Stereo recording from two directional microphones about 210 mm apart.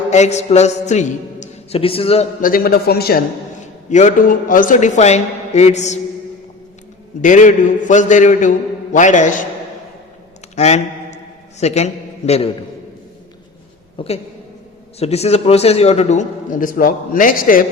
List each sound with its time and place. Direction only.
0.1 s a man's voice: 35° left (ahead or behind)
2.4 s a man's voice: 45° left (ahead or behind)
3.8 s a man's voice: 35° left (ahead or behind)
7.2 s a man's voice: 35° left (ahead or behind)
10.5 s a sound: 30° left (ahead or behind)
11.6 s a man's voice: 30° left (ahead or behind)
14.0 s a woman's voice: 25° left (ahead or behind); by 17.7 s 40° left (ahead or behind)